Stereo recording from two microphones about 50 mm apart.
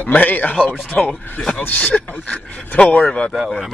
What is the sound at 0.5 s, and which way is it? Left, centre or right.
Speech, centre.